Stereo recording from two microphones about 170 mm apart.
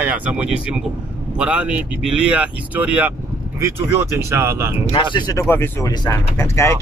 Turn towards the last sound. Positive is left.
turn(degrees=15)  # may be behind; listen again after turning